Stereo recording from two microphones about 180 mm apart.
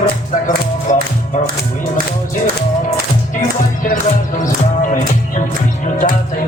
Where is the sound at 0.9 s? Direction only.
45° left (ahead or behind).